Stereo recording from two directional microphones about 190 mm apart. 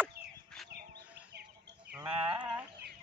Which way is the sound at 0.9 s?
60° right (ahead or behind).